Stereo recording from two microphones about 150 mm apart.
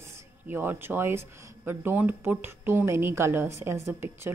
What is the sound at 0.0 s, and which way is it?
A woman's voice, 20° right (ahead or behind).